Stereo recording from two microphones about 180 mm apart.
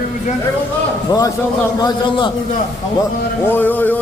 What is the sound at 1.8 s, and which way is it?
Speech, 25° left (ahead or behind).